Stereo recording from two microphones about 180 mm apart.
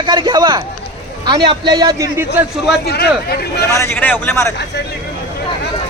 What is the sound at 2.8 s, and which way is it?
Speech, 60° left (ahead or behind).